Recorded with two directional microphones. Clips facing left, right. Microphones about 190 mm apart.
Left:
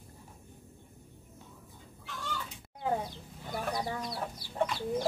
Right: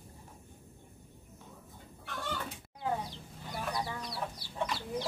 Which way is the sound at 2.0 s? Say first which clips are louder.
Right 2 dB; 55° right (ahead or behind).